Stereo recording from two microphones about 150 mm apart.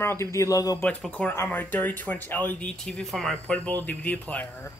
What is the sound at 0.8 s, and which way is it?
Speech, 10° left (ahead or behind).